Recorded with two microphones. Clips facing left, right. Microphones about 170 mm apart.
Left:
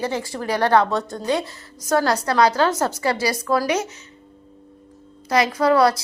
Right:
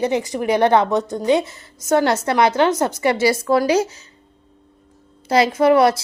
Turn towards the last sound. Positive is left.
turn(degrees=-25)  # may be behind; listen again after turning